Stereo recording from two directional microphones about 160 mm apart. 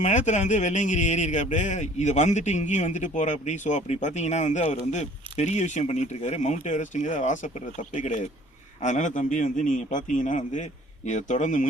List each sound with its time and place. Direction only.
0.0 s speech: 50° left (ahead or behind)